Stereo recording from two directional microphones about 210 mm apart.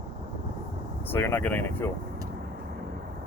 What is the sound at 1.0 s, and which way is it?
Speech, 10° left (ahead or behind).